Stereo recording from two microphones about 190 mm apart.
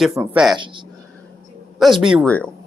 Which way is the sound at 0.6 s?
25° right (ahead or behind).